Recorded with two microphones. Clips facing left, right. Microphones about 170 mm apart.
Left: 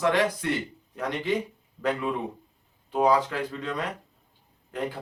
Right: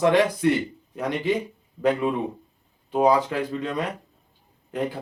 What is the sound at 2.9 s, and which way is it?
Speech, 15° right (ahead or behind).